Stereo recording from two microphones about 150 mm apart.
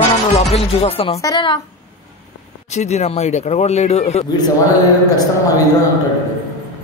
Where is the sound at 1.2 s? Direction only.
25° left (ahead or behind).